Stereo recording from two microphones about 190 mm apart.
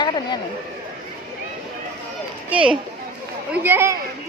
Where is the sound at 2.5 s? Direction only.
5° right (ahead or behind).